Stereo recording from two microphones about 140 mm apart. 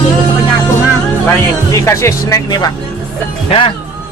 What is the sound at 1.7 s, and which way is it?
Speech, 20° left (ahead or behind).